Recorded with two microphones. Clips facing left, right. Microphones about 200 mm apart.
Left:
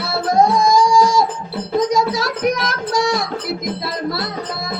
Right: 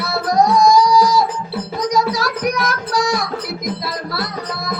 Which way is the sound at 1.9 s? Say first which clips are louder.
Even; 25° left (ahead or behind).